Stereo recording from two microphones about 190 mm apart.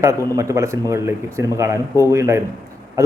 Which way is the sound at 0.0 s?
15° right (ahead or behind).